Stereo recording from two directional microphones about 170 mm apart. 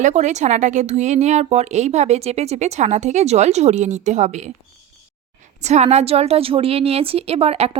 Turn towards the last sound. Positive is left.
turn(degrees=-35)  # may be behind; listen again after turning